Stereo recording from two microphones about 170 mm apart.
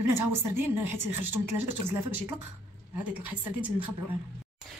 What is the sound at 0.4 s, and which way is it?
Speech, 15° right (ahead or behind).